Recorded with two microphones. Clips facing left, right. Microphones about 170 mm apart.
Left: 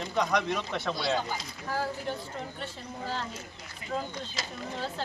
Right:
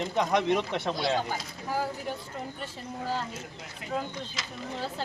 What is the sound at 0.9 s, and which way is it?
Speech, 50° right (ahead or behind).